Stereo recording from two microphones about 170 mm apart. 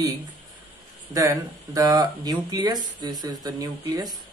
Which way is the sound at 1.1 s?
20° right (ahead or behind).